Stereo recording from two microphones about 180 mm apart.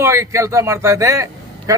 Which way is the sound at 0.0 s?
15° right (ahead or behind).